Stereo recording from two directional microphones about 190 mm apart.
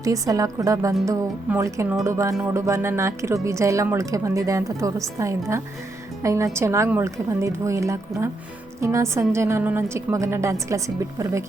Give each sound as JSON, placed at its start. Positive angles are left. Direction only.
{"t": 0.0, "sound": "speech", "side_deg": -20}